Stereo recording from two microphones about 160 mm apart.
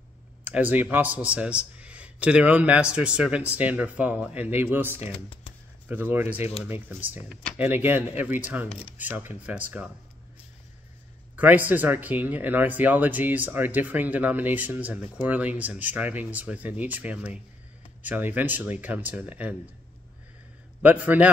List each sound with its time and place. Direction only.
0.4 s speech: 10° right (ahead or behind)
8.6 s speech: 35° left (ahead or behind)
8.9 s speech: 10° right (ahead or behind)
11.3 s speech: 10° right (ahead or behind)
20.8 s speech: 10° right (ahead or behind)